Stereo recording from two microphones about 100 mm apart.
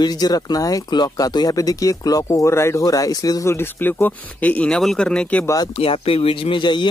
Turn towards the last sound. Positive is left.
turn(degrees=50)  # may be behind; listen again after turning